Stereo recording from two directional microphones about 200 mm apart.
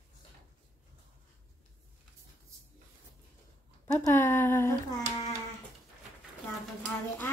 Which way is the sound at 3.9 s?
10° left (ahead or behind).